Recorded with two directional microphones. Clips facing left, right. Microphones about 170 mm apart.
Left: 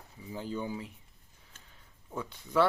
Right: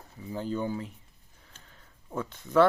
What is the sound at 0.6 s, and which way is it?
Speech, 45° right (ahead or behind).